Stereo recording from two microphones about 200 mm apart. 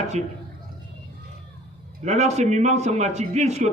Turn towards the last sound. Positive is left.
turn(degrees=-35)  # may be behind; listen again after turning